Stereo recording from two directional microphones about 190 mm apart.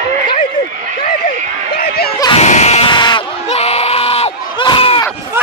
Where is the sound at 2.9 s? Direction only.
25° left (ahead or behind).